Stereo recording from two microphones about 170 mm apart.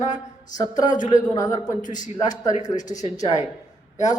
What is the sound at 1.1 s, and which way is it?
Speech, 20° left (ahead or behind).